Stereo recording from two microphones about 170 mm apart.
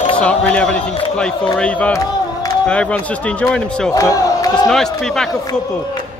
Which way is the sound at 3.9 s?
20° left (ahead or behind).